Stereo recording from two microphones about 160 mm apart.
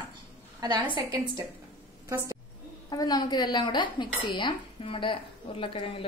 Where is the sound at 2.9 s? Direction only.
25° left (ahead or behind).